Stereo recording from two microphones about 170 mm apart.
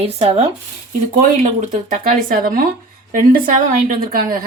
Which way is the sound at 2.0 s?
55° right (ahead or behind).